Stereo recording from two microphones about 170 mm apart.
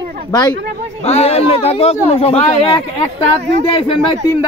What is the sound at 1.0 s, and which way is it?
Speech, 40° left (ahead or behind).